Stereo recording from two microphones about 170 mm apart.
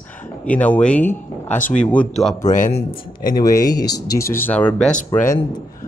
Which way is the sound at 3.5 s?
20° left (ahead or behind).